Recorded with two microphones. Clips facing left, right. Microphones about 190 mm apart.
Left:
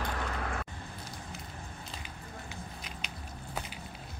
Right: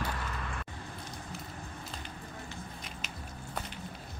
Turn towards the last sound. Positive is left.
turn(degrees=0)  # may be behind; listen again after turning